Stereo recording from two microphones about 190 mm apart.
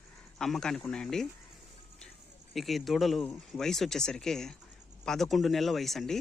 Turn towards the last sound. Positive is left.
turn(degrees=0)  # may be behind; listen again after turning